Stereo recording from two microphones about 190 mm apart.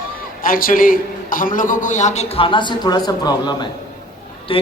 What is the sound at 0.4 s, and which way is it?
A man's voice, 45° left (ahead or behind).